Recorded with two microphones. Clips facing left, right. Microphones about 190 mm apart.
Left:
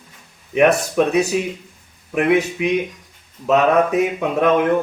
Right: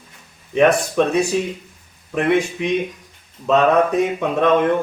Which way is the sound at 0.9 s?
10° left (ahead or behind).